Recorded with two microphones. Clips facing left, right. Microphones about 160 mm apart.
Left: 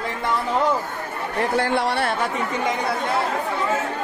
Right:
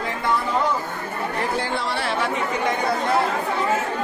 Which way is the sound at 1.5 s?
65° left (ahead or behind).